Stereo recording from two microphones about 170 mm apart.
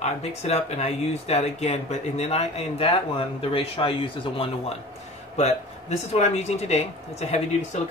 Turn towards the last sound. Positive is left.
turn(degrees=40)  # may be behind; listen again after turning